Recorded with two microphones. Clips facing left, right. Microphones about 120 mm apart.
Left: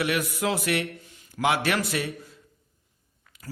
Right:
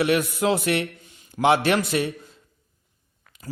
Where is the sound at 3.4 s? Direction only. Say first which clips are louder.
Right 4 dB; 20° right (ahead or behind).